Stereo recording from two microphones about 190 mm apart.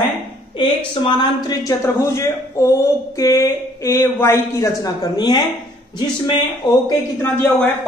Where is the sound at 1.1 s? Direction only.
20° left (ahead or behind).